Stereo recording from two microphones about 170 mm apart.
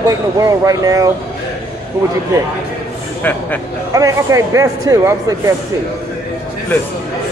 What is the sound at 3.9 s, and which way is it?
Speech, 20° right (ahead or behind).